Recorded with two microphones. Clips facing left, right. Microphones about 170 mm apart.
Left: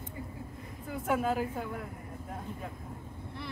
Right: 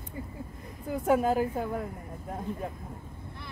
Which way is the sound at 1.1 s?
40° right (ahead or behind).